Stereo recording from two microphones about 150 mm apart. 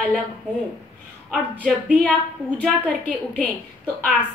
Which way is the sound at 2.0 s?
10° left (ahead or behind).